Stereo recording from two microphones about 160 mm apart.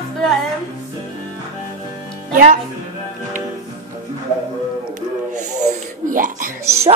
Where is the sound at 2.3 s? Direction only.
55° right (ahead or behind).